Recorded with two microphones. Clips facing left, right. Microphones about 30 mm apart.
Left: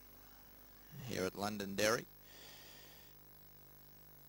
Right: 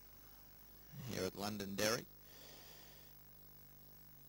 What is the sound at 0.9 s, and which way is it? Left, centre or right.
Speech, centre.